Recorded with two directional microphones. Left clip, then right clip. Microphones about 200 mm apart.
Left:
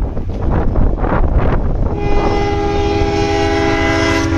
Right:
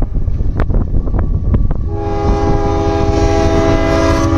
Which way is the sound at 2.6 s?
30° right (ahead or behind).